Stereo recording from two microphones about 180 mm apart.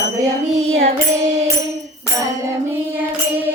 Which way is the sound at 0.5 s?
35° right (ahead or behind).